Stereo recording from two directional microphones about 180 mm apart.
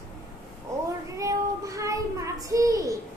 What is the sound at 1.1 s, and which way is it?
Child singing, 20° right (ahead or behind).